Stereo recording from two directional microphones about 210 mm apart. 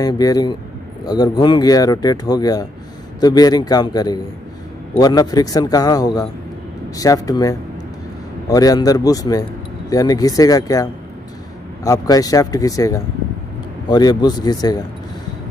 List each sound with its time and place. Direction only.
0.0 s a man's voice: 15° left (ahead or behind)